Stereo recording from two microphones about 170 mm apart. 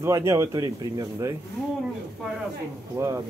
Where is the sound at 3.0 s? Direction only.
15° right (ahead or behind).